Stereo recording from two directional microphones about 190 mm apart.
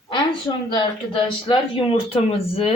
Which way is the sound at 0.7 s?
25° left (ahead or behind).